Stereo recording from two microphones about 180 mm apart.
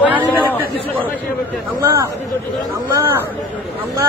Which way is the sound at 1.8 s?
15° right (ahead or behind).